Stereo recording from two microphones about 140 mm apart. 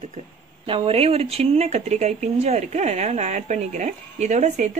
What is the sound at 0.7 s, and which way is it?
Speech, 40° right (ahead or behind).